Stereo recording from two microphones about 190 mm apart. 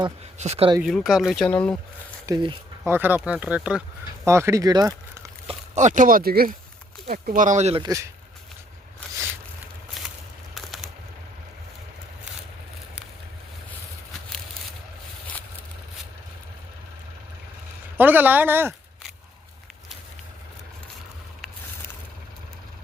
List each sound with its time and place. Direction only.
0.3 s speech: 35° right (ahead or behind)
0.8 s speech: centre (ahead or behind)
2.2 s speech: 25° right (ahead or behind)
2.8 s speech: 10° right (ahead or behind)
5.5 s speech: 40° right (ahead or behind)
7.8 s speech: 20° right (ahead or behind)
10.5 s bird: centre (ahead or behind)
17.9 s speech: 10° right (ahead or behind)